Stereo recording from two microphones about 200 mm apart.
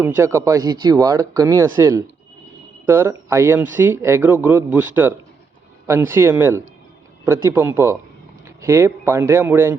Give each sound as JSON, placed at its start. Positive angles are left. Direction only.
{"t": 0.0, "sound": "speech", "side_deg": -10}